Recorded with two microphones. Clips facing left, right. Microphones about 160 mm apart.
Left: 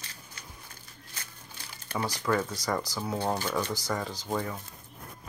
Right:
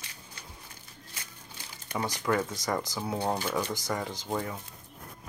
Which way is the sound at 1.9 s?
20° right (ahead or behind).